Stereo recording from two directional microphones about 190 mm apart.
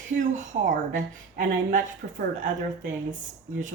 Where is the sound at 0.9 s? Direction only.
45° right (ahead or behind).